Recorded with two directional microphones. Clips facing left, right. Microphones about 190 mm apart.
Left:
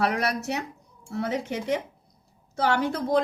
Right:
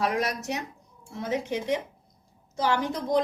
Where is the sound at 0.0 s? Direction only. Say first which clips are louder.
Left 2 dB; 65° left (ahead or behind).